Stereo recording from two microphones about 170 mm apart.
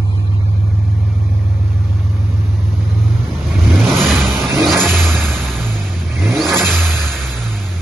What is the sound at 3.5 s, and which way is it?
Vehicle, centre (ahead or behind).